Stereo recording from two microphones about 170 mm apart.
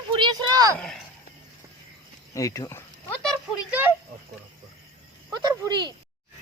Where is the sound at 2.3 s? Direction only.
20° left (ahead or behind).